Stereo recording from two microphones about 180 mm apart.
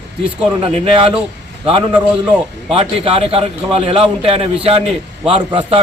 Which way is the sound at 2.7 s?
35° right (ahead or behind).